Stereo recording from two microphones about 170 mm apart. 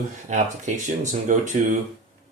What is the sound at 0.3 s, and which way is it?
Speech, 45° right (ahead or behind).